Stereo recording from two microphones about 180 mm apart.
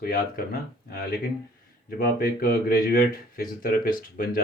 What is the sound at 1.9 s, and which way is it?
Speech, 55° left (ahead or behind).